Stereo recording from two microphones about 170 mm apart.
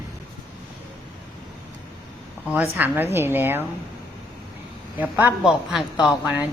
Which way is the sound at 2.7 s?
10° right (ahead or behind).